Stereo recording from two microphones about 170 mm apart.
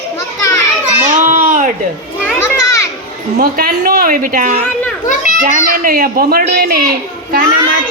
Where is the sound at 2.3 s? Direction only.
15° left (ahead or behind).